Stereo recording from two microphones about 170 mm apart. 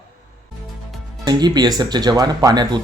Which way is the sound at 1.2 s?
25° right (ahead or behind).